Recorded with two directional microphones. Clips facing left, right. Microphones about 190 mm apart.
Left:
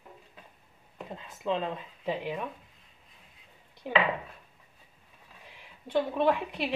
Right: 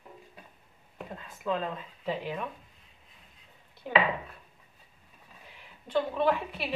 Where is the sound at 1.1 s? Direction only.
20° left (ahead or behind).